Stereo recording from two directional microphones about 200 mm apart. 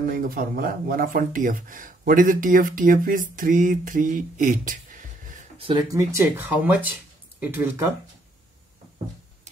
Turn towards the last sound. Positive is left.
turn(degrees=-10)  # may be behind; listen again after turning